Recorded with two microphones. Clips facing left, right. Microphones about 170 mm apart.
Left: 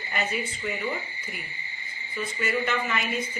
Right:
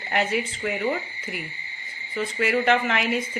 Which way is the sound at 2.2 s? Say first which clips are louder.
Right 5 dB; 75° right (ahead or behind).